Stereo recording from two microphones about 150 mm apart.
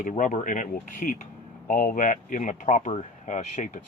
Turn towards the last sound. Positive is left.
turn(degrees=55)  # may be behind; listen again after turning